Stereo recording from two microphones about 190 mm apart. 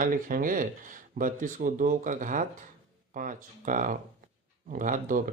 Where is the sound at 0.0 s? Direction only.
45° right (ahead or behind).